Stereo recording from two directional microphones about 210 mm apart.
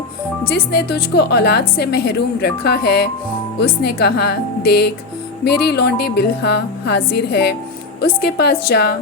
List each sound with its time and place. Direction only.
0.4 s a woman's voice: 50° left (ahead or behind)